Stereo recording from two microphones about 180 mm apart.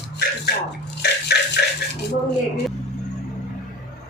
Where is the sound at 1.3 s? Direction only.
65° left (ahead or behind).